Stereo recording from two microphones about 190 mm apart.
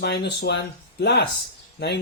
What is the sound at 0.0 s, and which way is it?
Speech, 60° left (ahead or behind).